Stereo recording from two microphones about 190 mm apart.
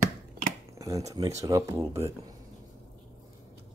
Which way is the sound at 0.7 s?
15° right (ahead or behind).